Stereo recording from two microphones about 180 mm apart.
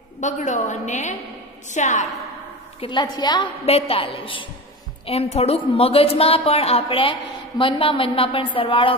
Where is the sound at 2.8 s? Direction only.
25° left (ahead or behind).